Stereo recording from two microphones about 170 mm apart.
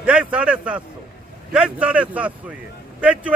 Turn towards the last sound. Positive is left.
turn(degrees=-5)  # may be behind; listen again after turning